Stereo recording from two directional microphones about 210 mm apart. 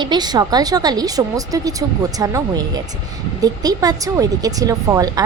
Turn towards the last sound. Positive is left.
turn(degrees=-15)  # may be behind; listen again after turning